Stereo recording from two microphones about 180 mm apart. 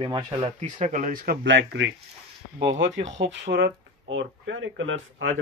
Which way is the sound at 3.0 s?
75° right (ahead or behind).